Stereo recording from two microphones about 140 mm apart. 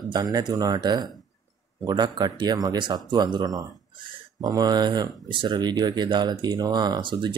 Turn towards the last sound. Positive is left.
turn(degrees=-35)  # may be behind; listen again after turning